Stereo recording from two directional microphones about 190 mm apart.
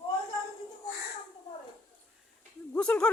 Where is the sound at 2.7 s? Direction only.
5° left (ahead or behind).